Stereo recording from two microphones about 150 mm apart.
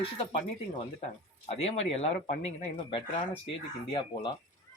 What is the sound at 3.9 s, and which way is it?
Speech, 30° left (ahead or behind).